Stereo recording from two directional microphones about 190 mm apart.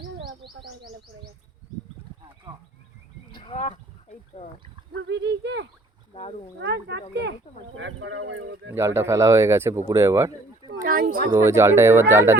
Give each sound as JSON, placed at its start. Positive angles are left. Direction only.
{"t": 0.3, "sound": "a sound", "side_deg": -55}
{"t": 3.3, "sound": "a sound", "side_deg": 30}
{"t": 4.9, "sound": "speech", "side_deg": -65}
{"t": 7.5, "sound": "speech", "side_deg": 25}
{"t": 7.8, "sound": "speech", "side_deg": -85}
{"t": 9.0, "sound": "speech", "side_deg": -15}
{"t": 10.7, "sound": "speech", "side_deg": -55}
{"t": 11.3, "sound": "speech", "side_deg": -15}